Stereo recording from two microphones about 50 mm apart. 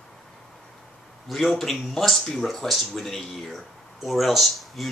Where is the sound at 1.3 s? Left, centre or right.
Centre.